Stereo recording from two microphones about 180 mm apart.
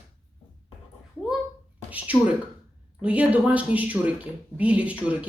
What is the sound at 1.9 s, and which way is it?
A woman's voice, 10° right (ahead or behind).